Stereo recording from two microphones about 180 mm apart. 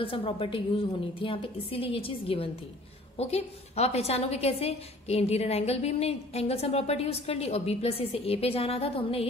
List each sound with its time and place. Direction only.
0.0 s a woman's voice: 30° left (ahead or behind)